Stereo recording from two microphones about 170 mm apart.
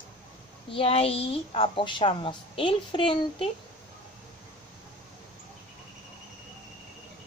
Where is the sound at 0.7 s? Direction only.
35° left (ahead or behind).